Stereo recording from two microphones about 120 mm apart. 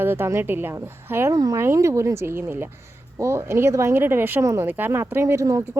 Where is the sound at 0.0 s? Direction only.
20° right (ahead or behind).